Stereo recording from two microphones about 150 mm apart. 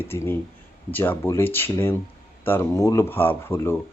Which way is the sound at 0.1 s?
15° left (ahead or behind).